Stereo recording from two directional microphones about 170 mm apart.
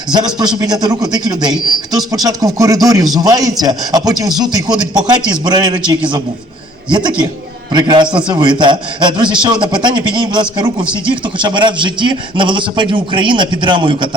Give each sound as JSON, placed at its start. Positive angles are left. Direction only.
{"t": 0.1, "sound": "a man's voice", "side_deg": -25}
{"t": 7.7, "sound": "a man's voice", "side_deg": -25}